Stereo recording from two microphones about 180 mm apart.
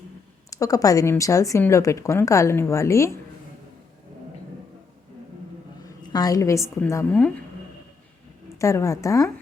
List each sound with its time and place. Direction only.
0.5 s a woman's voice: 20° left (ahead or behind)
6.0 s a woman's voice: 20° left (ahead or behind)
8.5 s a woman's voice: 15° left (ahead or behind)